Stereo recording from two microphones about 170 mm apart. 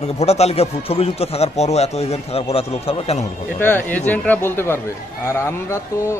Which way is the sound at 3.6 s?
10° left (ahead or behind).